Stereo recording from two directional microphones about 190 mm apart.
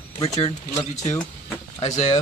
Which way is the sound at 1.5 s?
20° left (ahead or behind).